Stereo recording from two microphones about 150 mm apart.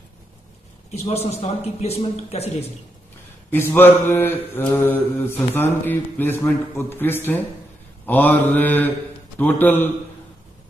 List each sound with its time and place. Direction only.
0.9 s a man's voice: 45° left (ahead or behind)
3.5 s mantra: 15° left (ahead or behind)